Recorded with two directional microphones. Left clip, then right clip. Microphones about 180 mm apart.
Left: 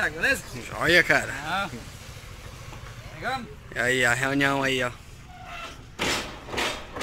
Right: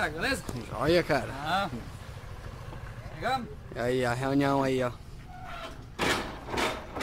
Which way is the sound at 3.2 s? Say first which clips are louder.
Even; 15° right (ahead or behind).